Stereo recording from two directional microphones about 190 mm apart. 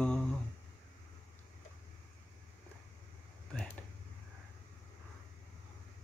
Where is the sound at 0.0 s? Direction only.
5° left (ahead or behind).